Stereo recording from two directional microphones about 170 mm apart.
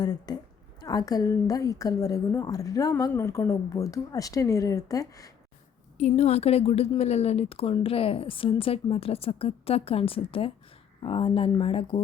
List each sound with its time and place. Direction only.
0.0 s a woman's voice: 25° left (ahead or behind)
6.0 s a woman's voice: 40° left (ahead or behind)